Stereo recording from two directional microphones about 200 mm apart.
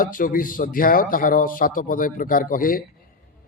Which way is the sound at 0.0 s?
45° left (ahead or behind).